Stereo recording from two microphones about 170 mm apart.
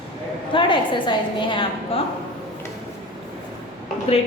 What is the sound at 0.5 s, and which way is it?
A woman's voice, 30° left (ahead or behind).